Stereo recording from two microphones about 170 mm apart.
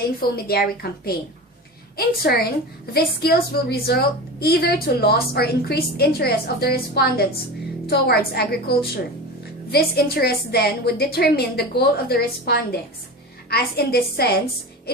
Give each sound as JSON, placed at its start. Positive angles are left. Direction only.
{"t": 0.2, "sound": "a woman's voice", "side_deg": 65}